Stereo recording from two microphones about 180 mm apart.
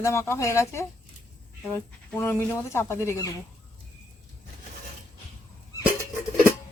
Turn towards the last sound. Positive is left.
turn(degrees=15)  # may be behind; listen again after turning